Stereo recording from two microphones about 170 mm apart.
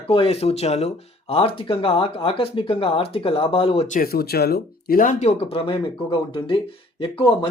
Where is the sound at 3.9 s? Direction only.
60° left (ahead or behind).